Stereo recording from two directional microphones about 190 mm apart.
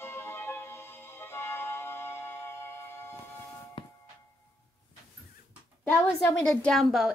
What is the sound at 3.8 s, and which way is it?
Music, 30° left (ahead or behind).